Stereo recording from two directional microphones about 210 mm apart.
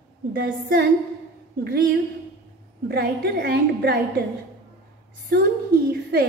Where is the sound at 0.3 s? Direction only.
45° right (ahead or behind).